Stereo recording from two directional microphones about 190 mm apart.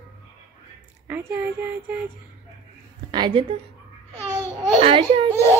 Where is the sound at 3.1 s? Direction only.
25° right (ahead or behind).